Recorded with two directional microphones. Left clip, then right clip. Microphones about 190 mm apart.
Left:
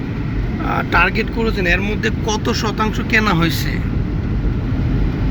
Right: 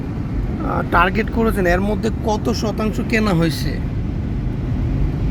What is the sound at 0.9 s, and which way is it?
Speech, 25° right (ahead or behind).